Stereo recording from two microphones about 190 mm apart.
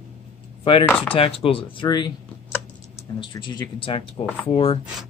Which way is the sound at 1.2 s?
30° left (ahead or behind).